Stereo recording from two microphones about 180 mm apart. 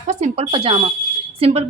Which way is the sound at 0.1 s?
35° right (ahead or behind).